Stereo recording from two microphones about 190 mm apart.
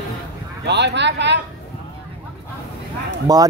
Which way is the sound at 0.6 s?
65° right (ahead or behind).